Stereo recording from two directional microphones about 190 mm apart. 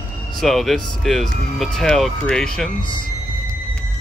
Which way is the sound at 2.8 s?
25° left (ahead or behind).